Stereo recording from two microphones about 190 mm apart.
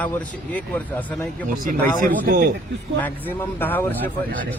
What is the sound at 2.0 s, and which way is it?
Speech, 50° right (ahead or behind).